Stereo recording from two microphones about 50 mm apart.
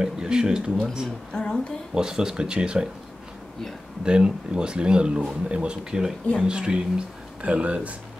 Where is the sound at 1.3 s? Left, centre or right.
Centre.